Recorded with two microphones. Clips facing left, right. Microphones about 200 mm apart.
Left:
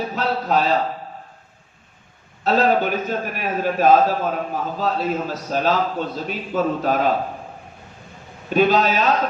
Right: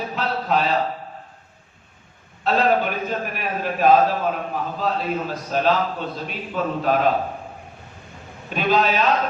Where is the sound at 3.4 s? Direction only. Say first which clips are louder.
Left 3 dB; 40° left (ahead or behind).